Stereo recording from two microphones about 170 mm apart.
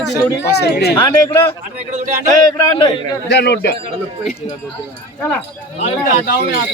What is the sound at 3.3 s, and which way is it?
Speech, 85° left.